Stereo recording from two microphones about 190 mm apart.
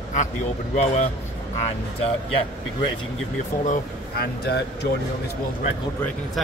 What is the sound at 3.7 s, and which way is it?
Speech, 55° left (ahead or behind).